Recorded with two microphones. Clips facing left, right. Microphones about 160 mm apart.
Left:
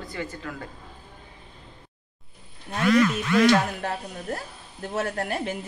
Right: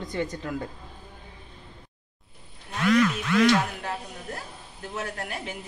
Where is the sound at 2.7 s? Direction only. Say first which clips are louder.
Left 2 dB; 40° left (ahead or behind).